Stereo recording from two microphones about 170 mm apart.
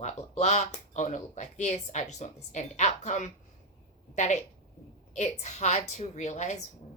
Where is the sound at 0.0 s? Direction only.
40° left (ahead or behind).